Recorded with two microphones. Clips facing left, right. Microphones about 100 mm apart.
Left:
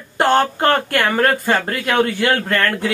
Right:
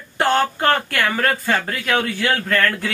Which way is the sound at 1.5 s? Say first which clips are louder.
Left 2 dB; 35° left (ahead or behind).